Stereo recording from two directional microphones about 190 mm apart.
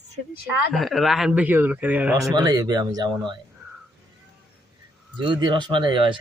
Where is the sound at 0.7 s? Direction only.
Centre (ahead or behind); by 3.3 s 20° right (ahead or behind).